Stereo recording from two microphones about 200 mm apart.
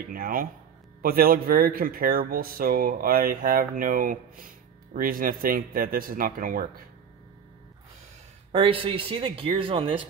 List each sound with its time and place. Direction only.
0.1 s speech: 45° right (ahead or behind)
8.5 s speech: 25° right (ahead or behind)